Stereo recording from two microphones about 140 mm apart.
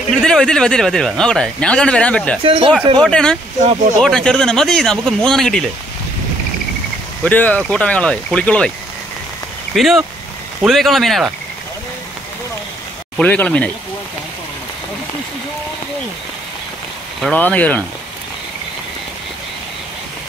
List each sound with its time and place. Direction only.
0.1 s speech: 5° left (ahead or behind)
2.4 s speech: 40° right (ahead or behind)
3.0 s speech: 5° left (ahead or behind)
7.2 s speech: 10° left (ahead or behind)
9.8 s speech: centre (ahead or behind)
13.2 s speech: 10° left (ahead or behind)
17.2 s speech: 10° left (ahead or behind)